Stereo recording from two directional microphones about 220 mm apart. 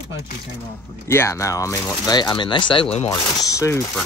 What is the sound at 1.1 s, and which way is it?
Speech, 10° left (ahead or behind).